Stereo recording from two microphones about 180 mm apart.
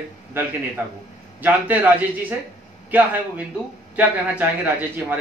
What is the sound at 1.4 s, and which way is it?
Speech, 10° right (ahead or behind).